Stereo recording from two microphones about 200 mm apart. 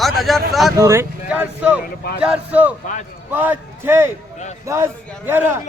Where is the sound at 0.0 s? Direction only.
Centre (ahead or behind).